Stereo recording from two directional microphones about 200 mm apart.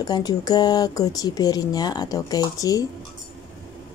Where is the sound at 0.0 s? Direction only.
20° left (ahead or behind).